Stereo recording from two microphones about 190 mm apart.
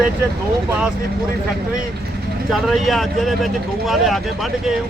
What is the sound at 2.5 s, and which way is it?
Speech, centre (ahead or behind).